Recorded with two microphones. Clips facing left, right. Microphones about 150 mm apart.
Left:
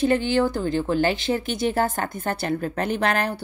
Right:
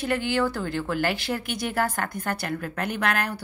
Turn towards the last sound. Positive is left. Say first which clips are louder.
# left 4 dB
turn(degrees=30)  # may be behind; listen again after turning